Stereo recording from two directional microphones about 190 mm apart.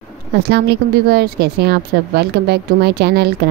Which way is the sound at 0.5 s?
60° right (ahead or behind).